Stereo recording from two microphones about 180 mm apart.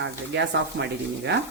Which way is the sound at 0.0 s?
75° right (ahead or behind).